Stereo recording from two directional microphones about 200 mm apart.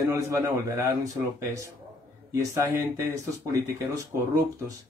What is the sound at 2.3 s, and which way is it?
A man's voice, 15° right (ahead or behind).